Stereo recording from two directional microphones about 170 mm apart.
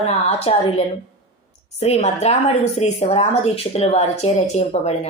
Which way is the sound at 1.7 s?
40° left (ahead or behind).